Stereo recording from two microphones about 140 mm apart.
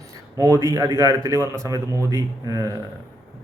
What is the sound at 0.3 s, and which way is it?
Speech, 25° right (ahead or behind).